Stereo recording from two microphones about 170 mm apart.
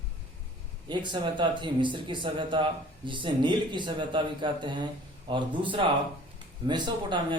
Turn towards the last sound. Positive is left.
turn(degrees=-25)  # may be behind; listen again after turning